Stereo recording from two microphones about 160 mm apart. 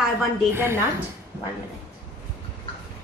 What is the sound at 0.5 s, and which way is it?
Speech, 15° right (ahead or behind).